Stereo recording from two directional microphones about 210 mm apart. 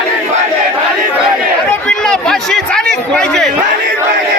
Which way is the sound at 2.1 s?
Centre (ahead or behind).